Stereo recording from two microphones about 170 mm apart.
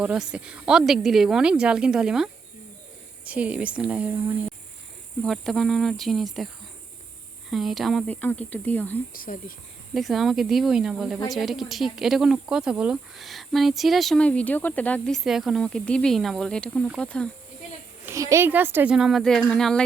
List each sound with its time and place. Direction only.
0.0 s speech: 5° right (ahead or behind)
5.2 s speech: centre (ahead or behind)
7.5 s speech: centre (ahead or behind)
9.1 s speech: 55° left (ahead or behind)
9.9 s speech: centre (ahead or behind)
18.0 s speech: 15° right (ahead or behind); by 19.8 s 5° left (ahead or behind)